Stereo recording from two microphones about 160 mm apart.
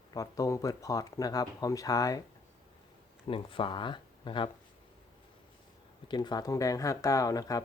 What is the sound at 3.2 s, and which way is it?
Speech, 35° left (ahead or behind).